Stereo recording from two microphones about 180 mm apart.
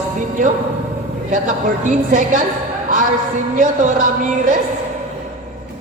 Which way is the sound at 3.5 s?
45° right (ahead or behind).